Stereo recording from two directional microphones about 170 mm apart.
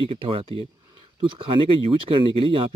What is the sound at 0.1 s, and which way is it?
Speech, 35° right (ahead or behind).